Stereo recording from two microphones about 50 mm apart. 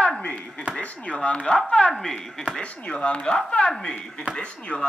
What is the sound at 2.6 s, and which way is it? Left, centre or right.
Speech, left.